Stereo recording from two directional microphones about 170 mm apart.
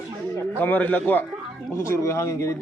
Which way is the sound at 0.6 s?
10° left (ahead or behind).